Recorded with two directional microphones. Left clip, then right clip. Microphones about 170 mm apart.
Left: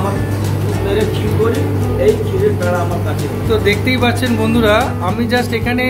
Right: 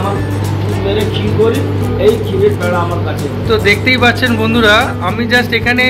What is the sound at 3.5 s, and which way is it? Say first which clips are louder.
Speech: right 4 dB; 10° left (ahead or behind).